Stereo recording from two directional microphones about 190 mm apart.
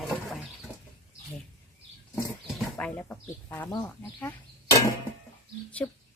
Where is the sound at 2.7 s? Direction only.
10° left (ahead or behind).